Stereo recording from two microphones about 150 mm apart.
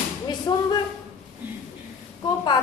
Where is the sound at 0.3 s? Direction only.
25° left (ahead or behind).